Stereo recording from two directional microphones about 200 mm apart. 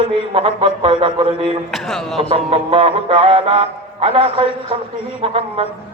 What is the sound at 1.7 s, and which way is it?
Speech, centre (ahead or behind).